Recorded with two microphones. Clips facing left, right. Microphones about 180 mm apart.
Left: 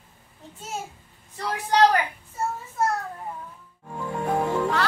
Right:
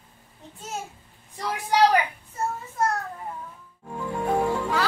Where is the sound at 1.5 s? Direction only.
10° right (ahead or behind).